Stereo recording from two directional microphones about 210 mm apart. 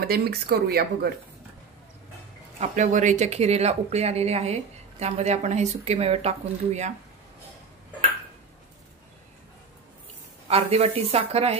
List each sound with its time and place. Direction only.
0.0 s speech: 50° right (ahead or behind)
2.6 s speech: 35° right (ahead or behind)
10.5 s speech: 30° right (ahead or behind)